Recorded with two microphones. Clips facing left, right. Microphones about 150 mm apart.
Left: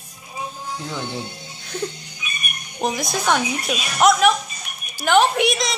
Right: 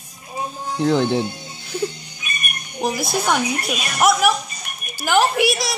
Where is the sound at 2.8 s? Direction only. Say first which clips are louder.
Right 1 dB; 5° right (ahead or behind).